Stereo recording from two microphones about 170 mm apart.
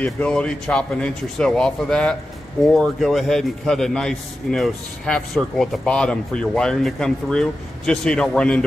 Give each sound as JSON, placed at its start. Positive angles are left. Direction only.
{"t": 0.0, "sound": "a man's voice", "side_deg": 5}